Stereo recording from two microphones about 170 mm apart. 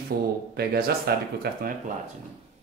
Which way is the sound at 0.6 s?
65° right (ahead or behind).